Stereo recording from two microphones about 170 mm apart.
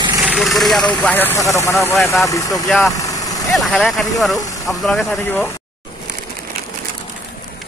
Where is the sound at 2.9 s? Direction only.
20° left (ahead or behind).